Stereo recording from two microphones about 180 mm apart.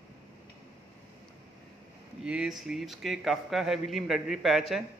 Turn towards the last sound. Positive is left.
turn(degrees=-5)  # may be behind; listen again after turning